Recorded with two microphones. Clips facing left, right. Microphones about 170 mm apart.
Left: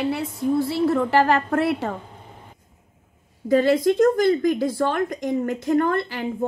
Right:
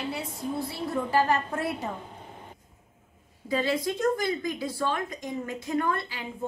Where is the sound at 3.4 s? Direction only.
50° left (ahead or behind).